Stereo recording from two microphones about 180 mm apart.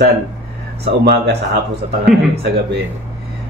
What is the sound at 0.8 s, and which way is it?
Speech, 65° right (ahead or behind).